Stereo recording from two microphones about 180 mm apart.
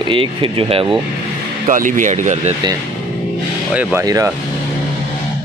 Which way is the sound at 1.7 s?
45° right (ahead or behind).